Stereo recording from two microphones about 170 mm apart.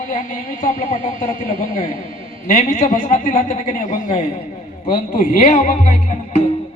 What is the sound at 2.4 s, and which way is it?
A man's voice, 50° left (ahead or behind).